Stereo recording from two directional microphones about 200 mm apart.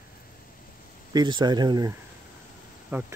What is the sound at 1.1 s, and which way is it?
Speech, 20° right (ahead or behind).